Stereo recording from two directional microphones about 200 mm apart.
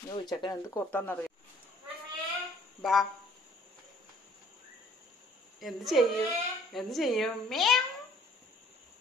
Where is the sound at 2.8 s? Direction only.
Centre (ahead or behind).